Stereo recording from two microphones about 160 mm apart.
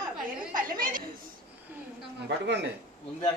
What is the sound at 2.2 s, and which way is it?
Speech, 90° right.